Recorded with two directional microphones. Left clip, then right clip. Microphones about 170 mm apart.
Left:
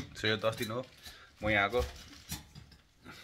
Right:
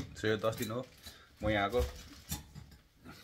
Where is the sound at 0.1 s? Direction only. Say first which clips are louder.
Left 1 dB; 5° right (ahead or behind).